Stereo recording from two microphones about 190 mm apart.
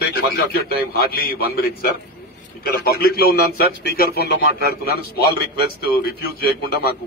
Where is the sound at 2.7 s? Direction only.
55° left (ahead or behind).